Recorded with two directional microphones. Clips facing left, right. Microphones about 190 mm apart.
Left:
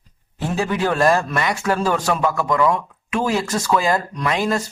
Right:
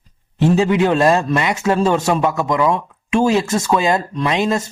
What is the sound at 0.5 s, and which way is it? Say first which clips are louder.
A man's voice: right 4 dB; 20° right (ahead or behind).